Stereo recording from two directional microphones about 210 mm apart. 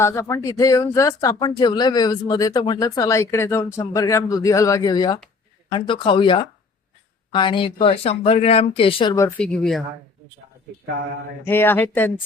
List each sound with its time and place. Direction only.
0.0 s speech: 15° left (ahead or behind)
9.4 s speech: 5° left (ahead or behind)
11.4 s speech: 10° left (ahead or behind)